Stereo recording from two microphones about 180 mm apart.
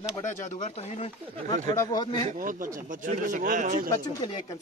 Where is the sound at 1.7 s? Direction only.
20° left (ahead or behind).